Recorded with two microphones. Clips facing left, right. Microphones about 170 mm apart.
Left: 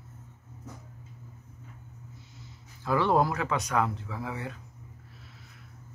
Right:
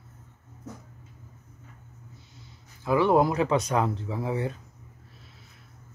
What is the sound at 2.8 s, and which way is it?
Speech, 15° right (ahead or behind).